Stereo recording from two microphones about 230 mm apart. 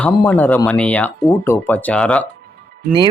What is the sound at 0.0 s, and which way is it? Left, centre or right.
A man's voice, centre.